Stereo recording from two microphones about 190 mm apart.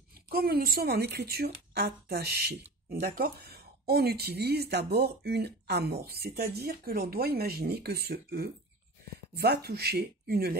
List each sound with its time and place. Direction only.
0.3 s speech: 55° right (ahead or behind)